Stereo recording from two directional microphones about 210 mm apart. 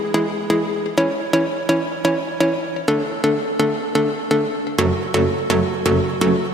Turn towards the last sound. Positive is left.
turn(degrees=0)  # may be behind; listen again after turning